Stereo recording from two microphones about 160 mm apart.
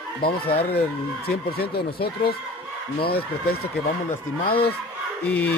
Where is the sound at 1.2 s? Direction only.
80° left.